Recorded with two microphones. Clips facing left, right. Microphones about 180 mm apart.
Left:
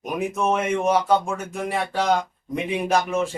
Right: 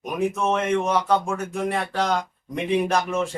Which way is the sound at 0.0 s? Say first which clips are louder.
Even; 10° left (ahead or behind).